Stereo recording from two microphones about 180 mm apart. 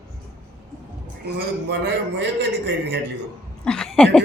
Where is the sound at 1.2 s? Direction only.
65° right (ahead or behind).